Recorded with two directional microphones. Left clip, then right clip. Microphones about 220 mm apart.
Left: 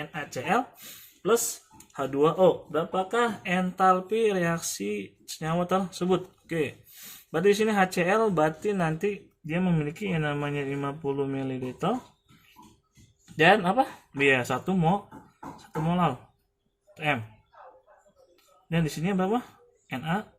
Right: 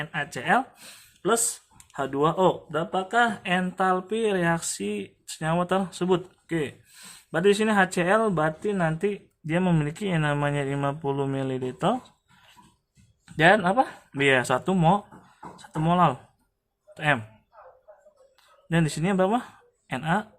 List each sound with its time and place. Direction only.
0.0 s speech: 35° right (ahead or behind)
13.3 s speech: 25° right (ahead or behind)
18.7 s speech: 35° right (ahead or behind)